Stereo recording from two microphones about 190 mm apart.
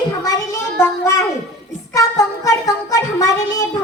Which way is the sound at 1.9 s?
15° left (ahead or behind).